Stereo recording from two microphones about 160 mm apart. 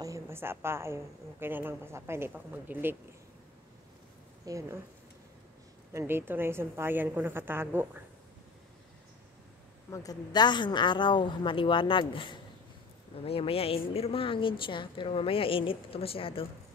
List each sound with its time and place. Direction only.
0.0 s a woman's voice: 15° right (ahead or behind)
4.5 s speech: 20° right (ahead or behind)
5.9 s a woman's voice: 15° right (ahead or behind)
9.8 s a woman's voice: 20° left (ahead or behind)